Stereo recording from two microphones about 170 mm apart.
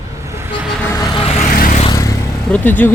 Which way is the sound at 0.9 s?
20° left (ahead or behind).